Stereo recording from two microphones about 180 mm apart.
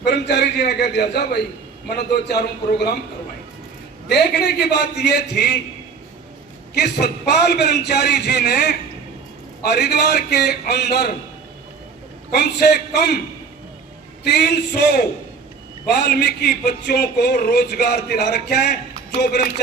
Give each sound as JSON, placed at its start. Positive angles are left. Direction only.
{"t": 0.0, "sound": "a man's voice", "side_deg": 65}
{"t": 4.1, "sound": "a man's voice", "side_deg": 65}
{"t": 6.7, "sound": "a man's voice", "side_deg": 65}
{"t": 12.3, "sound": "a man's voice", "side_deg": 65}
{"t": 14.3, "sound": "a man's voice", "side_deg": 65}
{"t": 15.9, "sound": "a man's voice", "side_deg": 65}